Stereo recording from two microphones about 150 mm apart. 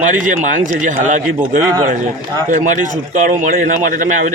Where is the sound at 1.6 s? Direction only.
20° right (ahead or behind).